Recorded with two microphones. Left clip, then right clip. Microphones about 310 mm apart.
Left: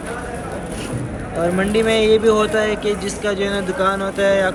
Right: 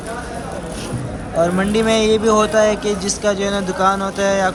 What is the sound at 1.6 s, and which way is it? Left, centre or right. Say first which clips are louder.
A man's voice: even; centre.